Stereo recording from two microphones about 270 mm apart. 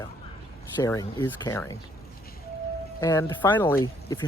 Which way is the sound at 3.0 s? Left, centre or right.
Centre.